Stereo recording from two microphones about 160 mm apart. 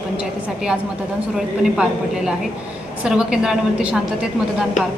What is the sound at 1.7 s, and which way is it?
A woman's voice, 5° right (ahead or behind).